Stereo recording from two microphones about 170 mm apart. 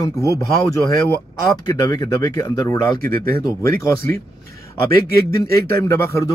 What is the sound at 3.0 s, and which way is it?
Speech, 60° right (ahead or behind).